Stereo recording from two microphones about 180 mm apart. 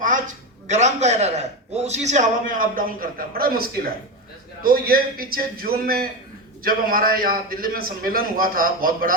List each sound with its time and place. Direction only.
0.0 s a man's voice: 45° right (ahead or behind)